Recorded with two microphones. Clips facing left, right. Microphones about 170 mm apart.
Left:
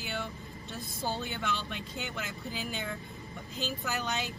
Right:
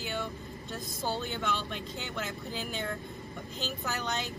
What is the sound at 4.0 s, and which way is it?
Speech, centre (ahead or behind).